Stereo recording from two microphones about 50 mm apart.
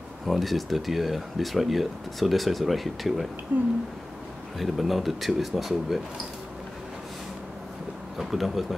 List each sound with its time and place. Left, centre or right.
0.3 s speech: centre
3.5 s speech: right
4.6 s speech: centre
8.2 s speech: centre